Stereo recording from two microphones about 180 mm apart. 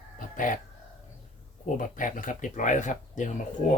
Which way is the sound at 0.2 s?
45° left (ahead or behind).